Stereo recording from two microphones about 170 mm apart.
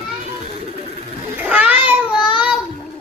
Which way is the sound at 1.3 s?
10° right (ahead or behind).